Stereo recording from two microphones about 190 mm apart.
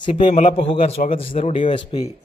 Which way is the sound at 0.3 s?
40° left (ahead or behind).